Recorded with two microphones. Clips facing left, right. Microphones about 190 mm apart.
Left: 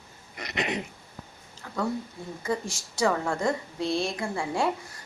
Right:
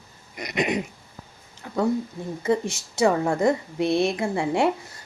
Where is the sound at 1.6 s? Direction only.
20° right (ahead or behind).